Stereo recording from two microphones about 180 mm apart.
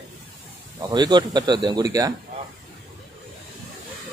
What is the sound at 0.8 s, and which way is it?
Speech, 25° right (ahead or behind).